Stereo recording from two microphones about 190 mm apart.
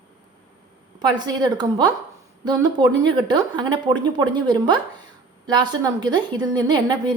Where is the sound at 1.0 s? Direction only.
20° right (ahead or behind).